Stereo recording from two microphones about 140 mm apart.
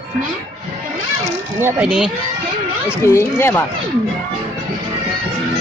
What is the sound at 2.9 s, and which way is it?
Speech, 15° left (ahead or behind).